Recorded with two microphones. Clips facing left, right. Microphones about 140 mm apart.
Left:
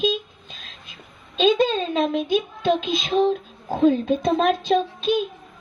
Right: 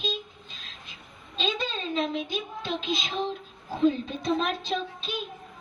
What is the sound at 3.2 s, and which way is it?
Child singing, 60° left (ahead or behind).